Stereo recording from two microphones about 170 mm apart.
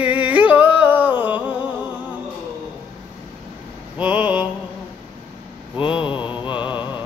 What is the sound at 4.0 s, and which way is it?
Mantra, 10° right (ahead or behind).